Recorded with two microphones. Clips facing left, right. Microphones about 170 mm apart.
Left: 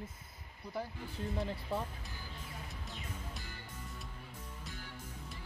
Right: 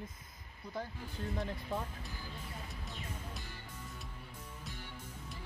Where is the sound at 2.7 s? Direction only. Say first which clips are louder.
Right 1 dB; centre (ahead or behind).